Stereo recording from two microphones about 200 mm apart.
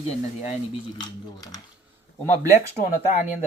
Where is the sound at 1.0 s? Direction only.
20° left (ahead or behind).